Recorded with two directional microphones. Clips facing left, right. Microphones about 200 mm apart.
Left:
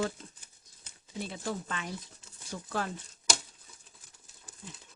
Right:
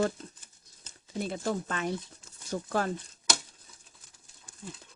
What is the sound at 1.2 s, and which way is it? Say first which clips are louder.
Speech: right 5 dB; 45° right (ahead or behind).